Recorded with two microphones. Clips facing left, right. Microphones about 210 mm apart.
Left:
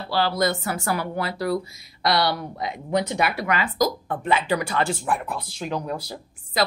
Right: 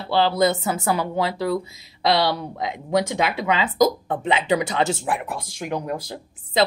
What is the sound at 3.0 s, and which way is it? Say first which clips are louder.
Speech: right 2 dB; 90° right.